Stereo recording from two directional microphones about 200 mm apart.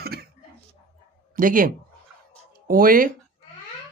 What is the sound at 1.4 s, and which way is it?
Speech, 45° right (ahead or behind).